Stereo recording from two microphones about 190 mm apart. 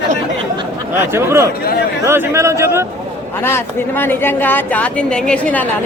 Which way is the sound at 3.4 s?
10° left (ahead or behind).